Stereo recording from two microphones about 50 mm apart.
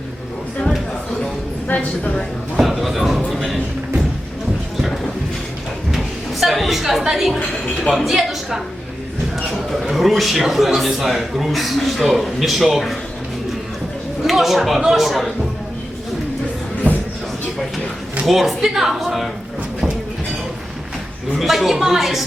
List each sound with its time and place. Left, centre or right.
1.6 s a woman's voice: left
2.6 s a sound: centre
6.4 s a man's voice: centre
9.9 s a man's voice: centre
14.3 s a man's voice: centre
18.3 s a man's voice: centre
21.3 s a man's voice: centre